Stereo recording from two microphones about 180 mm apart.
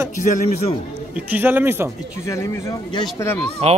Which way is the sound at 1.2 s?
10° right (ahead or behind).